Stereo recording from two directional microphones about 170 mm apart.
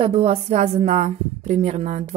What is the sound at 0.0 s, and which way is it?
A woman's voice, 35° right (ahead or behind).